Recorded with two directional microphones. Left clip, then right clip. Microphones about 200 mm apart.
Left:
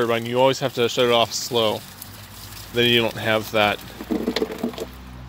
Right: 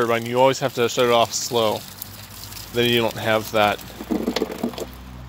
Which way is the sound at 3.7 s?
20° right (ahead or behind).